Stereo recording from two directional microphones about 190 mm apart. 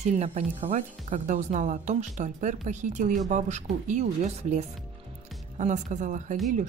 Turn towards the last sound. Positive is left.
turn(degrees=-40)  # may be behind; listen again after turning